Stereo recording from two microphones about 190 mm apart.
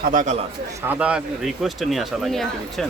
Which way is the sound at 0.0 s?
45° right (ahead or behind).